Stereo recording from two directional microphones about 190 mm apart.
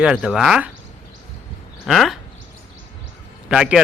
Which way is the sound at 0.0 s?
5° right (ahead or behind).